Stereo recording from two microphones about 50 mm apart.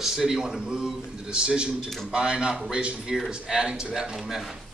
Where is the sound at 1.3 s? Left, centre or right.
Centre.